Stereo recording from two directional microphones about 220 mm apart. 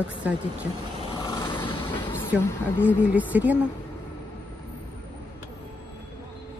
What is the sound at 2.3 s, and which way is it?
Speech, 5° right (ahead or behind).